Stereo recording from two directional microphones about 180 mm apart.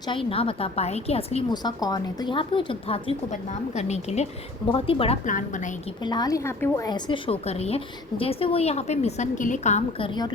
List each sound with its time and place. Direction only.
0.1 s a woman's voice: 30° left (ahead or behind)
5.2 s a woman's voice: 45° left (ahead or behind)
6.0 s a woman's voice: 25° left (ahead or behind); by 10.1 s 40° left (ahead or behind)
10.1 s a woman's voice: 25° left (ahead or behind)